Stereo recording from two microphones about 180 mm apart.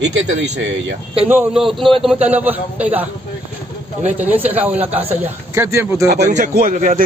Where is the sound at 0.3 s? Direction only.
90° right.